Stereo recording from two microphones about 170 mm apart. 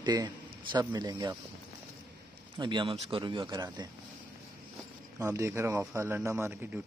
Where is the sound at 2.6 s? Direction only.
30° right (ahead or behind).